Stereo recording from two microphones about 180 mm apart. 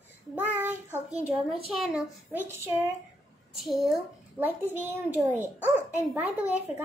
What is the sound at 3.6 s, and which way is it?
A child's voice, centre (ahead or behind).